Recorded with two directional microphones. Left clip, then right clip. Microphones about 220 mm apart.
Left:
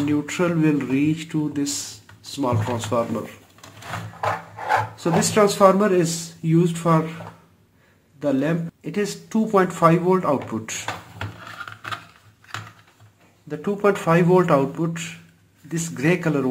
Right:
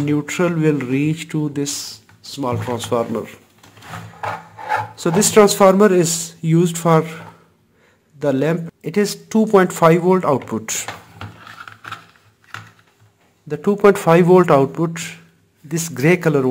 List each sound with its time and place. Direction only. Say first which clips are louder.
0.0 s speech: right 3 dB; 40° right (ahead or behind)
4.9 s speech: right 6 dB; 45° right (ahead or behind)
8.2 s speech: right 4 dB; 45° right (ahead or behind)
13.5 s speech: right 7 dB; 45° right (ahead or behind)